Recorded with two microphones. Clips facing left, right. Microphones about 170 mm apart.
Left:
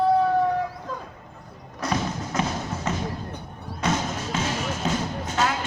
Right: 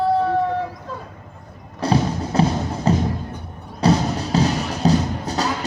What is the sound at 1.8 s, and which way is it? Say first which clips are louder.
Music: right 7 dB; 30° right (ahead or behind).